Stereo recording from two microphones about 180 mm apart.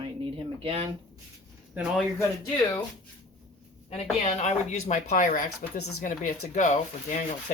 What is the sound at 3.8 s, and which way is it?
Speech, 35° left (ahead or behind).